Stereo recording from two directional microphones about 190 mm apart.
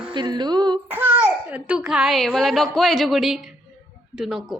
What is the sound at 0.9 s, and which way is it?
A child's voice, 10° right (ahead or behind).